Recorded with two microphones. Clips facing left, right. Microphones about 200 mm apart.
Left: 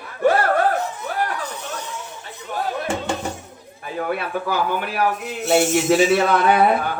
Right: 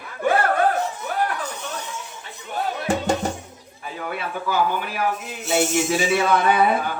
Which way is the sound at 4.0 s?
55° left (ahead or behind).